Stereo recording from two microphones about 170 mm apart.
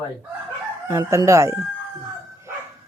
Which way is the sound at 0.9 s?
15° right (ahead or behind).